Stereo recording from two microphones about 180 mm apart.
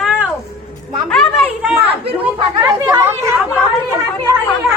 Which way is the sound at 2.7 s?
15° right (ahead or behind).